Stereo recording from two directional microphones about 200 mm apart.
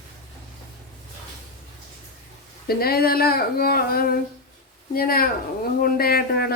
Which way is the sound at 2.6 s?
50° left (ahead or behind).